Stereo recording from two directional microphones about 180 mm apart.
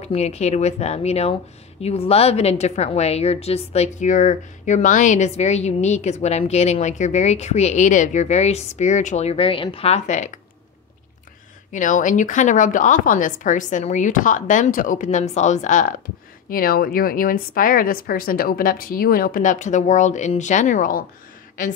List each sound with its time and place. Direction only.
0.0 s a woman's voice: 35° left (ahead or behind)
11.7 s a woman's voice: 45° left (ahead or behind)
16.4 s a woman's voice: 55° left (ahead or behind)